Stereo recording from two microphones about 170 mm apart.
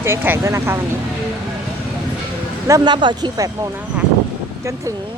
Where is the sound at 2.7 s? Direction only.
25° right (ahead or behind).